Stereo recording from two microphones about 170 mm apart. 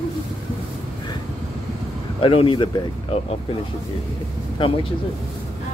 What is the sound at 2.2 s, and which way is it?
Speech, 30° left (ahead or behind).